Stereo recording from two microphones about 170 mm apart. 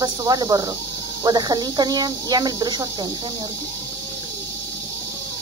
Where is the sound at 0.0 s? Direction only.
20° right (ahead or behind).